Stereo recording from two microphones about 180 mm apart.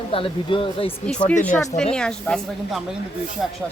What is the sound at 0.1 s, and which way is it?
Speech, 30° left (ahead or behind).